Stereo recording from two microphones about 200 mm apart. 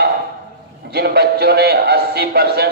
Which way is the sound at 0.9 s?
55° right (ahead or behind).